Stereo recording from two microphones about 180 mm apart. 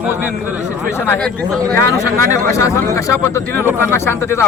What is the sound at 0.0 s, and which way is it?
Speech, 10° right (ahead or behind).